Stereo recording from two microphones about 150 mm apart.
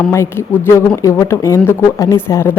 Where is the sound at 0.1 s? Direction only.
20° left (ahead or behind).